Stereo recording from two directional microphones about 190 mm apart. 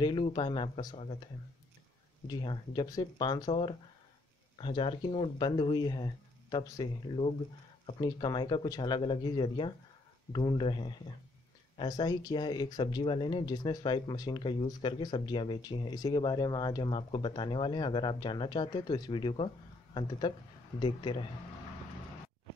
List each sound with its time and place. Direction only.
0.0 s speech: 25° left (ahead or behind)
2.2 s speech: 25° left (ahead or behind)